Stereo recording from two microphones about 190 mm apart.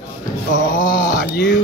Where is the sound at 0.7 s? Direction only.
45° left (ahead or behind).